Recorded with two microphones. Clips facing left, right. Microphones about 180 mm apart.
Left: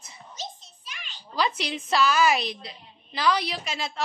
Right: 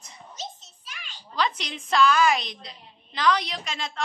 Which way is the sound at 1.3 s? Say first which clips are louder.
Left 1 dB; 10° left (ahead or behind).